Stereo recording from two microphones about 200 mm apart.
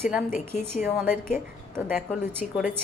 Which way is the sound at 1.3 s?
5° left (ahead or behind).